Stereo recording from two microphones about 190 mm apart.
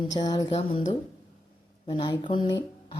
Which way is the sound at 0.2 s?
20° left (ahead or behind).